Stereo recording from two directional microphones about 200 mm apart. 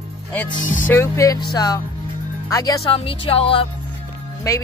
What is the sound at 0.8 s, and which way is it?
Speech, 10° left (ahead or behind).